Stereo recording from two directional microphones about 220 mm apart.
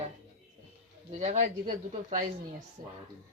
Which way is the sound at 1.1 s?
30° right (ahead or behind).